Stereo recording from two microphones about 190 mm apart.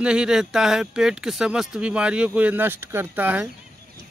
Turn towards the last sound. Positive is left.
turn(degrees=-10)  # may be behind; listen again after turning